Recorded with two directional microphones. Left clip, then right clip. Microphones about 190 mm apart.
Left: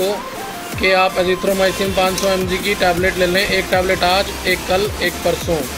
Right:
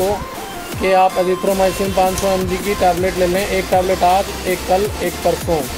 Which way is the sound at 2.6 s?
15° right (ahead or behind).